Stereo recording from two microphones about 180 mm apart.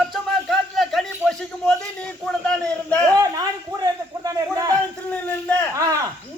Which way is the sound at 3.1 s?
20° right (ahead or behind).